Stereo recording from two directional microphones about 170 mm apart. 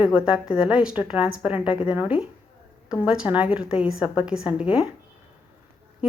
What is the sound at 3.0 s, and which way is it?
A woman's voice, 5° right (ahead or behind).